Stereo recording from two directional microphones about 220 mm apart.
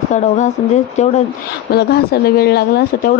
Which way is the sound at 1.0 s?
30° left (ahead or behind).